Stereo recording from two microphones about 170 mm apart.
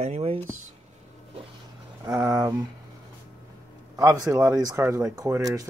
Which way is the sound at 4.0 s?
20° right (ahead or behind).